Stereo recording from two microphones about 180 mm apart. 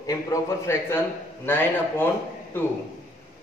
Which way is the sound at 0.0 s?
20° left (ahead or behind).